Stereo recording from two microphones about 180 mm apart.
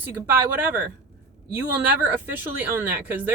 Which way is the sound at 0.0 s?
10° right (ahead or behind).